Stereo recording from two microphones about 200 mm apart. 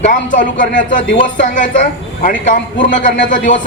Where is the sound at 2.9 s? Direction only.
40° left (ahead or behind).